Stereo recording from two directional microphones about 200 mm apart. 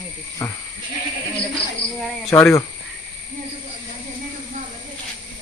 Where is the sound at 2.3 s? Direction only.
15° left (ahead or behind).